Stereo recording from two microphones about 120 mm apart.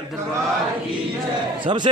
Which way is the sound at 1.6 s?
40° right (ahead or behind).